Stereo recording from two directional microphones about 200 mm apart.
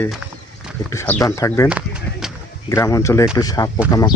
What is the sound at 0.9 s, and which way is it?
Speech, 10° left (ahead or behind).